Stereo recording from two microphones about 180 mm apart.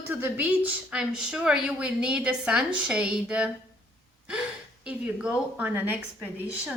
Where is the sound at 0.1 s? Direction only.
10° right (ahead or behind).